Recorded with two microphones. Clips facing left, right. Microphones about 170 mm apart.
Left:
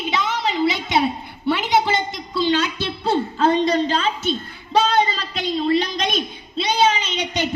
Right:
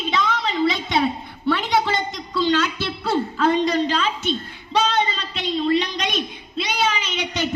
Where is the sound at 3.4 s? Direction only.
30° left (ahead or behind).